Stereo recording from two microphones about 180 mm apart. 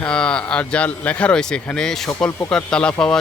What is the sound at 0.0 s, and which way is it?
Speech, 5° left (ahead or behind).